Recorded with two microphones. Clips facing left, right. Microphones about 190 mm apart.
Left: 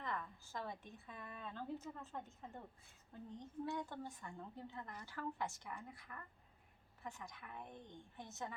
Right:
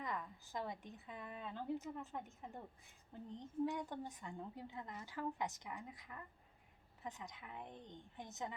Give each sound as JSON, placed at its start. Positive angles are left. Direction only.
{"t": 0.0, "sound": "a woman's voice", "side_deg": -15}
{"t": 3.3, "sound": "a woman's voice", "side_deg": -15}